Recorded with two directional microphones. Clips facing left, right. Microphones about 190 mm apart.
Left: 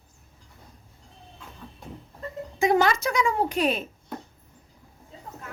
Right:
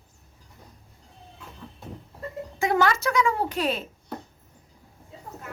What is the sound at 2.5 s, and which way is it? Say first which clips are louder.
Speech: left 2 dB; 15° left (ahead or behind).